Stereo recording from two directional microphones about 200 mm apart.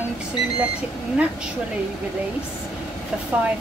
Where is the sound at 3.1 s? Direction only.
5° right (ahead or behind).